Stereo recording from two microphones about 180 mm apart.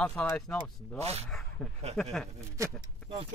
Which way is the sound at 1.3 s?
5° left (ahead or behind).